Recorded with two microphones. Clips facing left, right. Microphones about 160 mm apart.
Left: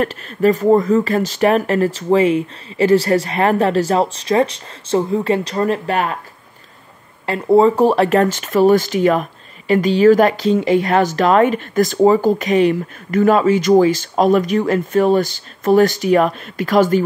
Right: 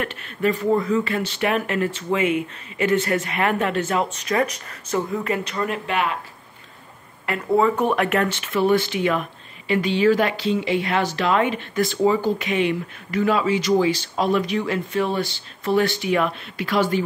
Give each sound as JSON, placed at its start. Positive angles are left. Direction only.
{"t": 0.0, "sound": "speech", "side_deg": 40}
{"t": 7.2, "sound": "speech", "side_deg": 30}